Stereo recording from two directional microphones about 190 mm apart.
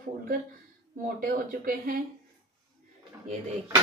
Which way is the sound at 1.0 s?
50° right (ahead or behind).